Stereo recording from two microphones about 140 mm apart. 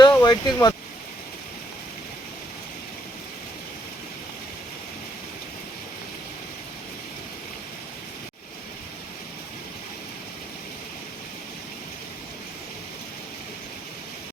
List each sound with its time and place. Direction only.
0.0 s vehicle: 30° left (ahead or behind)